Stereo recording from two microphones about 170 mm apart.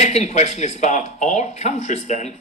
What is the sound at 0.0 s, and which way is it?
Speech, 40° left (ahead or behind).